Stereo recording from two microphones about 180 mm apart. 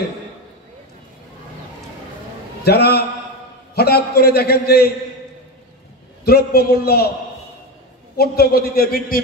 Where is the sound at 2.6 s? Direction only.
65° left (ahead or behind).